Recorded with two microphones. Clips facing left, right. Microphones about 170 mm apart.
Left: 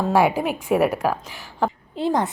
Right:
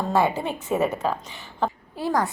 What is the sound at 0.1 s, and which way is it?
A woman's voice, 10° left (ahead or behind).